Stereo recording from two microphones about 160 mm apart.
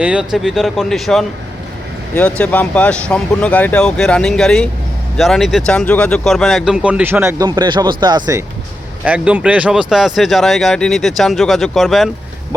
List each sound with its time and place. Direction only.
0.0 s speech: 5° right (ahead or behind); by 8.4 s 25° right (ahead or behind)
9.0 s speech: 10° right (ahead or behind)